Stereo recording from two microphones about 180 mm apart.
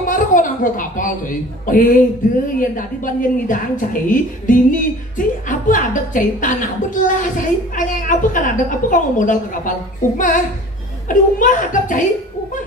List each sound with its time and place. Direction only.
0.0 s a woman's voice: 50° left (ahead or behind)